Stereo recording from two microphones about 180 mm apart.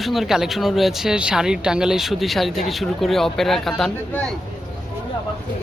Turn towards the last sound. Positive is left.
turn(degrees=5)  # may be behind; listen again after turning